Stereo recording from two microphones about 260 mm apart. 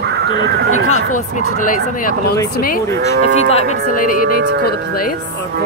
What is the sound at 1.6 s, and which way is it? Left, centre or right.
Speech, left.